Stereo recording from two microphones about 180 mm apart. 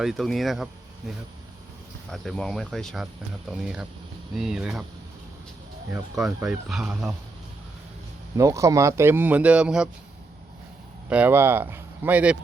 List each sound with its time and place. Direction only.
0.0 s speech: centre (ahead or behind)
5.9 s speech: centre (ahead or behind)
8.4 s speech: 15° right (ahead or behind)
11.1 s speech: 10° right (ahead or behind)